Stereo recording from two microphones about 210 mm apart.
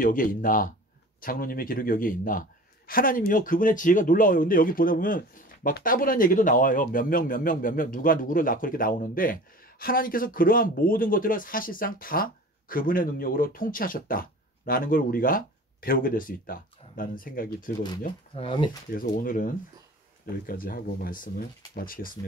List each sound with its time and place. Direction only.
0.0 s speech: 40° left (ahead or behind)
18.3 s speech: 25° left (ahead or behind)
18.9 s speech: 40° left (ahead or behind)